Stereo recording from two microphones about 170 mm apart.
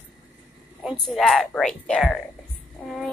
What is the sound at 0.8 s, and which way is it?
Speech, centre (ahead or behind).